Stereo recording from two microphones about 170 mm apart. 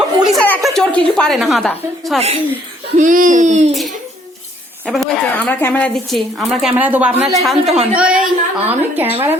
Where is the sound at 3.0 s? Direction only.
50° right (ahead or behind).